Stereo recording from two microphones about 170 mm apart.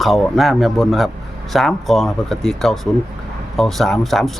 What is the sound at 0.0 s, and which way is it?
Speech, centre (ahead or behind).